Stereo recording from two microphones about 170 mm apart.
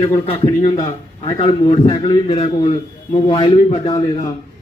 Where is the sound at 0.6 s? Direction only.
30° left (ahead or behind).